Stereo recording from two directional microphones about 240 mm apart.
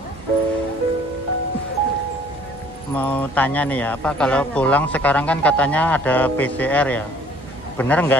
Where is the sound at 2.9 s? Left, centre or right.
Centre.